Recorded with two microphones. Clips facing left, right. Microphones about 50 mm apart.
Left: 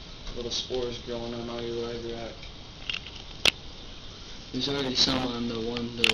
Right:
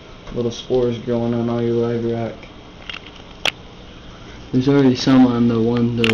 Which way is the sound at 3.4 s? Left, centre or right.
Right.